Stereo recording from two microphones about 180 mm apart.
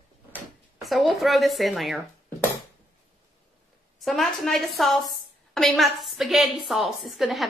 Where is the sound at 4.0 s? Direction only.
Centre (ahead or behind).